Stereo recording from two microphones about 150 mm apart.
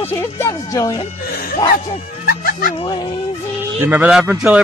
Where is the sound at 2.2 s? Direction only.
70° left (ahead or behind).